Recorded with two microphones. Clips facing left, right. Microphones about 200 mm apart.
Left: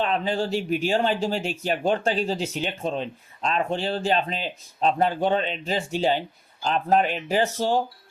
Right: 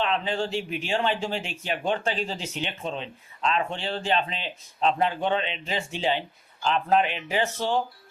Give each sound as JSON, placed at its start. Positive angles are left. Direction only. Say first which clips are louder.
{"t": 0.0, "sound": "speech", "louder": "left 2 dB", "side_deg": 40}